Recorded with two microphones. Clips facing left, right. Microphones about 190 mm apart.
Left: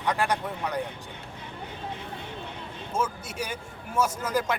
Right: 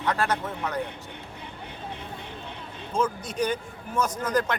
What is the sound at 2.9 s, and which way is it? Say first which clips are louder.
A man's voice: right 4 dB; 5° left (ahead or behind).